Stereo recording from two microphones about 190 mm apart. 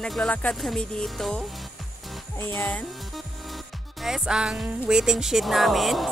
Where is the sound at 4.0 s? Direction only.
Centre (ahead or behind).